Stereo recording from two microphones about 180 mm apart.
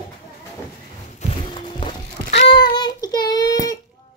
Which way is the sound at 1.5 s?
25° left (ahead or behind).